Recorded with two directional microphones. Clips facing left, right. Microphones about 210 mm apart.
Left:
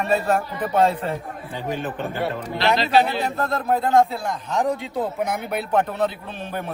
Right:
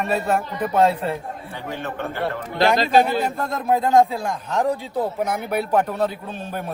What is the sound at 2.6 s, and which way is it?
Speech, 45° right (ahead or behind).